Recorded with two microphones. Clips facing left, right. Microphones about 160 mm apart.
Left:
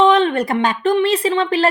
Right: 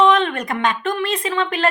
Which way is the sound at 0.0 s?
30° left (ahead or behind).